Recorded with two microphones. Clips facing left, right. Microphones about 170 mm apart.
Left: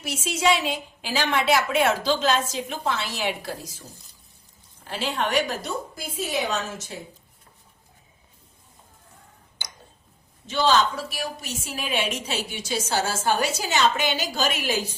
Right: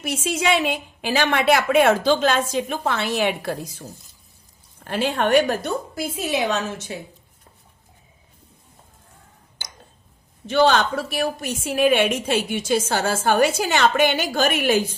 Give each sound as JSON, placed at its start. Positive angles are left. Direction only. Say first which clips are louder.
{"t": 0.0, "sound": "a woman's voice", "louder": "right 1 dB", "side_deg": -55}
{"t": 10.4, "sound": "a woman's voice", "louder": "right 4 dB", "side_deg": -60}